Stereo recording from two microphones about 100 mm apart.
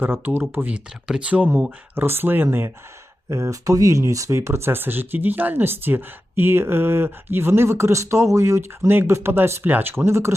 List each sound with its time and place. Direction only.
0.0 s speech: 20° right (ahead or behind)
3.2 s speech: 30° right (ahead or behind)